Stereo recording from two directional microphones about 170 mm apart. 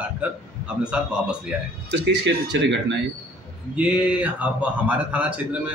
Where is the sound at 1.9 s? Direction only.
85° right.